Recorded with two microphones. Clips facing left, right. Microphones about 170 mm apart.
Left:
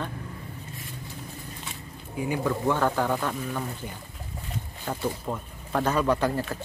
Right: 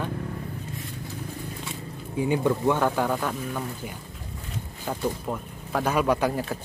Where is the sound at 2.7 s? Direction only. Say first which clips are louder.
Right 1 dB; 10° right (ahead or behind).